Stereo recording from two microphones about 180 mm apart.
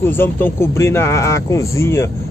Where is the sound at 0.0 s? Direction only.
10° left (ahead or behind).